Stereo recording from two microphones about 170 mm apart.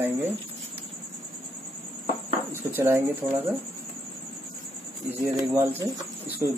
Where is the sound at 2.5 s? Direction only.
15° right (ahead or behind).